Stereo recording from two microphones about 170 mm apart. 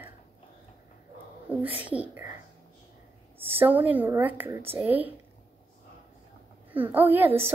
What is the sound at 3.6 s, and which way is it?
A woman's voice, 10° right (ahead or behind).